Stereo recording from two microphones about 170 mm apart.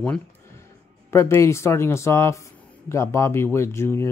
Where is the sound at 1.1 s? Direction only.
15° left (ahead or behind).